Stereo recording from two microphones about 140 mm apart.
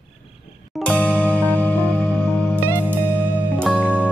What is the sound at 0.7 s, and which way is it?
Music, 10° left (ahead or behind).